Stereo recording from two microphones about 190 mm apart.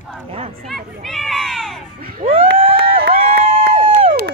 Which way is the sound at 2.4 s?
50° right (ahead or behind).